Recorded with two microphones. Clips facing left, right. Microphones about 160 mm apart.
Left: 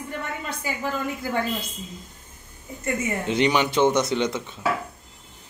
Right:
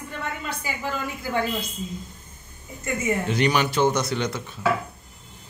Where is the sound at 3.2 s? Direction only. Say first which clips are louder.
Left 4 dB; 20° left (ahead or behind).